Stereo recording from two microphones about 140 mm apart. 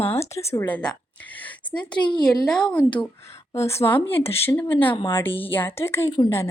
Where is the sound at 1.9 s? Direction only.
35° left (ahead or behind).